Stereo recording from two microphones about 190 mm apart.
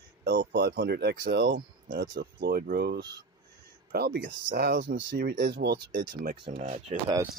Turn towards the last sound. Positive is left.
turn(degrees=-30)  # may be behind; listen again after turning